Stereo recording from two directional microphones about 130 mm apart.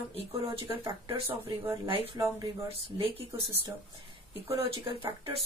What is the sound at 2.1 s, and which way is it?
Speech, 30° right (ahead or behind).